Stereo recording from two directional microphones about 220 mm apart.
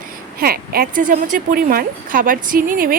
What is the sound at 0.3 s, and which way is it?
A woman's voice, 45° right (ahead or behind).